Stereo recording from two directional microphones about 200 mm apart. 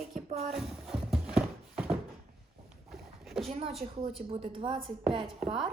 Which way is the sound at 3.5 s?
30° right (ahead or behind).